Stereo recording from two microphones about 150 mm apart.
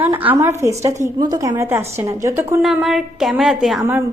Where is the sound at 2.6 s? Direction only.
Centre (ahead or behind).